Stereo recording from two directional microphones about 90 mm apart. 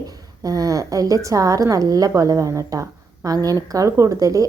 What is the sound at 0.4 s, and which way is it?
A woman's voice, 40° right (ahead or behind).